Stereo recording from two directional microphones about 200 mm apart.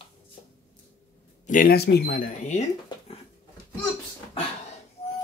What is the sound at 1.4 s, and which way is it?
Speech, 40° left (ahead or behind).